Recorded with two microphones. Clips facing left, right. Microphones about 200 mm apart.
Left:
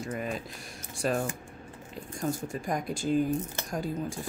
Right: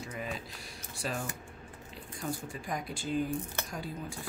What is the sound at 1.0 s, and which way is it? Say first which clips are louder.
Speech: left 8 dB; 50° left (ahead or behind).